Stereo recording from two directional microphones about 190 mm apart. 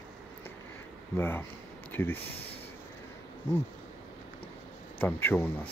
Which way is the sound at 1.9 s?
10° left (ahead or behind).